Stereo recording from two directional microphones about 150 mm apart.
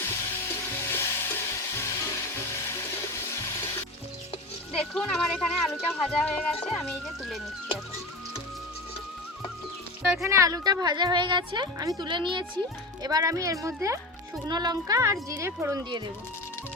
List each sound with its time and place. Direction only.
0.9 s music: 15° left (ahead or behind)
4.7 s speech: 5° left (ahead or behind)
10.2 s a woman's voice: 20° right (ahead or behind)